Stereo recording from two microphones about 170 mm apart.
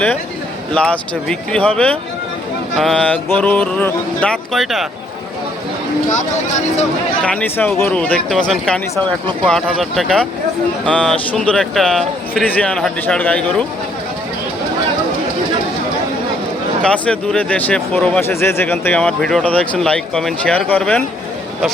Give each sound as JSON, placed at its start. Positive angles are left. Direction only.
{"t": 0.7, "sound": "speech", "side_deg": 5}
{"t": 6.1, "sound": "speech", "side_deg": 45}
{"t": 7.3, "sound": "speech", "side_deg": 10}
{"t": 16.8, "sound": "speech", "side_deg": 5}